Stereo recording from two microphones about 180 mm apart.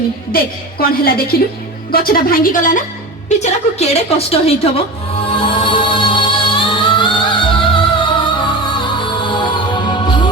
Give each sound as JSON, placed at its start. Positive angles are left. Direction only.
{"t": 0.3, "sound": "a woman's voice", "side_deg": 55}
{"t": 3.2, "sound": "a woman's voice", "side_deg": 40}
{"t": 5.3, "sound": "music", "side_deg": 30}